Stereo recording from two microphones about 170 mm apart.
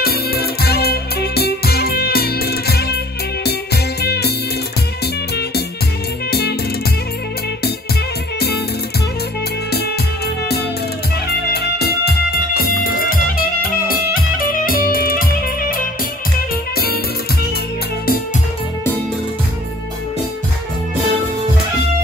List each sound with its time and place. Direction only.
0.0 s music: 65° left (ahead or behind)
9.7 s music: 70° left (ahead or behind)